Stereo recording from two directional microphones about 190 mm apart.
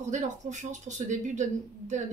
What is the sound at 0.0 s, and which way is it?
A woman's voice, 40° right (ahead or behind).